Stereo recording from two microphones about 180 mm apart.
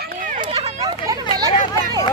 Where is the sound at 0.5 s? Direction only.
20° right (ahead or behind).